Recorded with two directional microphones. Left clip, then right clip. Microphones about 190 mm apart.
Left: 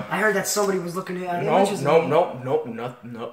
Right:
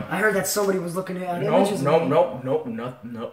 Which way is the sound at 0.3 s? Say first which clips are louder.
Even; 5° right (ahead or behind).